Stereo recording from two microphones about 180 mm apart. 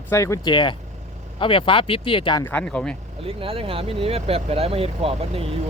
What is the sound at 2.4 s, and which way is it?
Speech, 10° left (ahead or behind).